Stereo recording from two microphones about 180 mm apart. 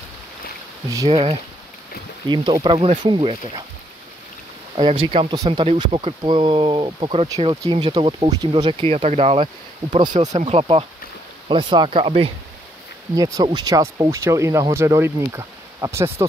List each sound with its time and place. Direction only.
0.8 s speech: 20° right (ahead or behind)
1.1 s speech: 35° right (ahead or behind)
4.7 s speech: 30° right (ahead or behind)
13.1 s speech: 20° right (ahead or behind)